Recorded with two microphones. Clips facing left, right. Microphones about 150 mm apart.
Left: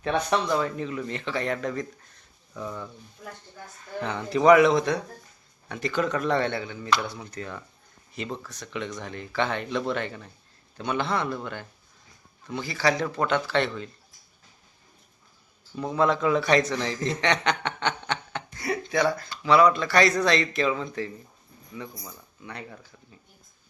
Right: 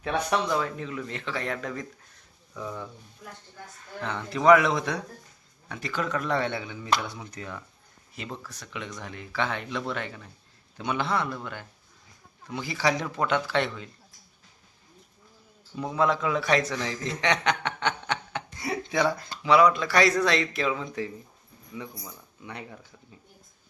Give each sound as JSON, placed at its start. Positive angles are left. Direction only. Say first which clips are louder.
{"t": 0.0, "sound": "speech", "louder": "left 2 dB", "side_deg": -5}
{"t": 4.0, "sound": "a man's voice", "louder": "left 2 dB", "side_deg": 0}
{"t": 12.5, "sound": "a man's voice", "louder": "left 1 dB", "side_deg": -15}
{"t": 15.8, "sound": "a man's voice", "louder": "left 2 dB", "side_deg": -5}
{"t": 18.6, "sound": "a man's voice", "louder": "left 1 dB", "side_deg": -25}
{"t": 22.4, "sound": "a man's voice", "louder": "even", "side_deg": -15}